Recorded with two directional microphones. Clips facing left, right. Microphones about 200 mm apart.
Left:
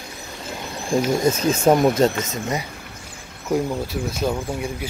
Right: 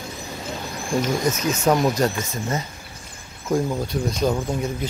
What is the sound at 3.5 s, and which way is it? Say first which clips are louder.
Speech: even; 5° left (ahead or behind).